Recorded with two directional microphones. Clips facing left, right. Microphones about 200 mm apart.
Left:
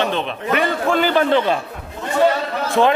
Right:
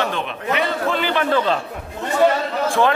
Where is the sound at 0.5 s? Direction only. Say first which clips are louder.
Left 4 dB; 45° left (ahead or behind).